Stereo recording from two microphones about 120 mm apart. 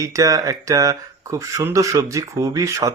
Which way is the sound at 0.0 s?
30° right (ahead or behind).